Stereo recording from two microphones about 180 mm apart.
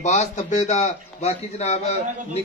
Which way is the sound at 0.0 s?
40° left (ahead or behind).